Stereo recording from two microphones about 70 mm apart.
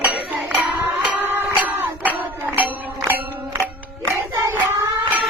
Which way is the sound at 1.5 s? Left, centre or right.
Centre.